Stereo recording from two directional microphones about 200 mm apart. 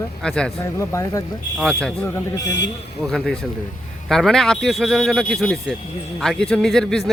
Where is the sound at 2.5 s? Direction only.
60° left (ahead or behind).